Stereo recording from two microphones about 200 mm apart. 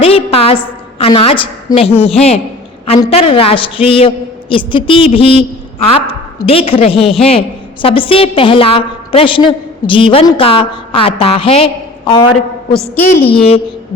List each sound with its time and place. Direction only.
0.0 s a woman's voice: 30° left (ahead or behind)
13.3 s a woman's voice: 30° left (ahead or behind)